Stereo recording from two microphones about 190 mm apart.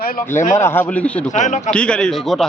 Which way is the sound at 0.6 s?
10° left (ahead or behind).